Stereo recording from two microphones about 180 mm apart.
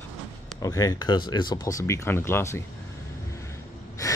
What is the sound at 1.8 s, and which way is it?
Speech, 15° left (ahead or behind).